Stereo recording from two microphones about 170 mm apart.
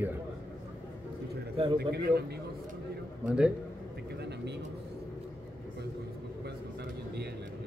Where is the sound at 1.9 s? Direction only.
70° right (ahead or behind).